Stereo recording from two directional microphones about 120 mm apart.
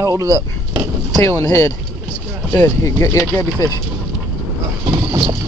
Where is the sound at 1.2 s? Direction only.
25° left (ahead or behind).